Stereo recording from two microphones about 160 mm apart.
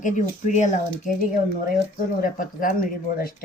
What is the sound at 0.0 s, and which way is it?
Speech, 50° left (ahead or behind).